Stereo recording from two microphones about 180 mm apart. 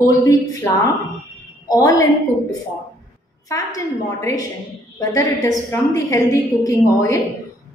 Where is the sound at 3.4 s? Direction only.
20° left (ahead or behind).